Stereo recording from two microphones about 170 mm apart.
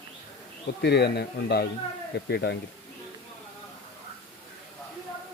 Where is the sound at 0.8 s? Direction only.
75° left (ahead or behind).